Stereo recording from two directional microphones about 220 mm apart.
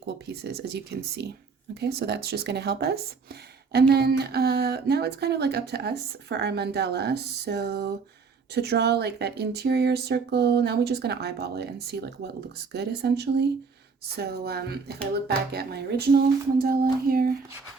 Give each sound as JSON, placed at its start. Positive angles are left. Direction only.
{"t": 0.0, "sound": "speech", "side_deg": -45}